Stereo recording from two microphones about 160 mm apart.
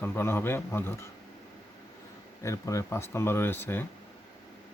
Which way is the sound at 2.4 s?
20° left (ahead or behind).